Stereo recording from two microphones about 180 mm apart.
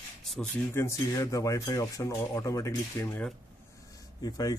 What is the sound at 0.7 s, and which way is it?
Speech, 15° left (ahead or behind).